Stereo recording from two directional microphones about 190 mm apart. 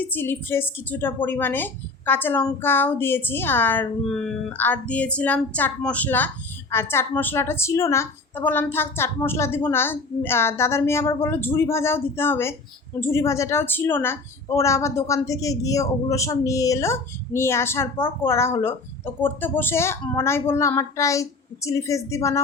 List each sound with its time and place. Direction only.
0.0 s a woman's voice: 10° left (ahead or behind)